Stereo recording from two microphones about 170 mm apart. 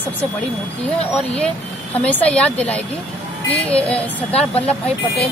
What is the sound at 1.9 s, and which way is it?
Speech, 10° left (ahead or behind).